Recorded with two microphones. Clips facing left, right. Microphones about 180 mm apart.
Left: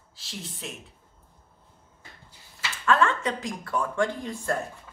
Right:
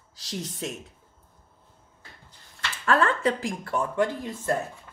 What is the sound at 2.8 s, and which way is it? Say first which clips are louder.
Speech: right 1 dB; 35° right (ahead or behind).